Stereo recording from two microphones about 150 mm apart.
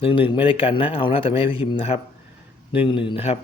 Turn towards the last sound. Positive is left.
turn(degrees=40)  # may be behind; listen again after turning